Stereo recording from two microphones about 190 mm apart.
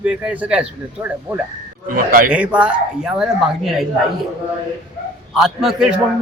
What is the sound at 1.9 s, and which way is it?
Speech, 50° right (ahead or behind).